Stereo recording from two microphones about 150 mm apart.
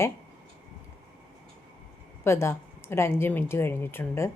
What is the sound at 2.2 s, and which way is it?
A woman's voice, 15° left (ahead or behind).